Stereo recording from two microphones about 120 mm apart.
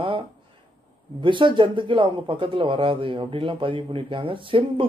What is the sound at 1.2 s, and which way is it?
Speech, 45° right (ahead or behind).